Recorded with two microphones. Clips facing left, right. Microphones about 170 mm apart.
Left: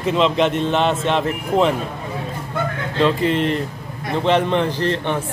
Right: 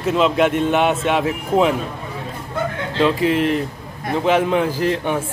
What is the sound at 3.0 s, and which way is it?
Speech, centre (ahead or behind).